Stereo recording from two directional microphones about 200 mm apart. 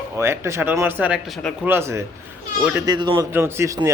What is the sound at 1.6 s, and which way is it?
Speech, 10° right (ahead or behind).